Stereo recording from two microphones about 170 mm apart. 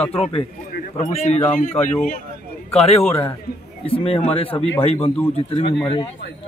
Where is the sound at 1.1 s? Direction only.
40° left (ahead or behind).